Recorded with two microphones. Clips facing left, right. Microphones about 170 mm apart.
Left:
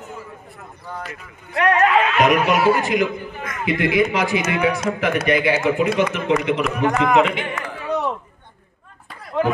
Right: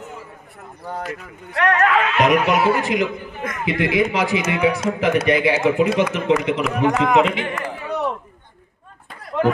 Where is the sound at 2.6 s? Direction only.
25° right (ahead or behind).